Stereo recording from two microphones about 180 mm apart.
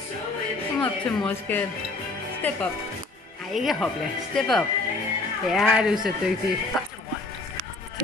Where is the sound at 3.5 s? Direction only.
Centre (ahead or behind).